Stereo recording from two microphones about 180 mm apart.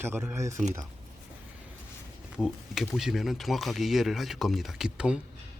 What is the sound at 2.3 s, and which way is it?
A man's voice, 5° right (ahead or behind).